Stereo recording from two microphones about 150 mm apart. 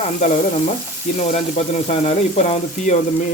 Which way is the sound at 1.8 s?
45° left (ahead or behind).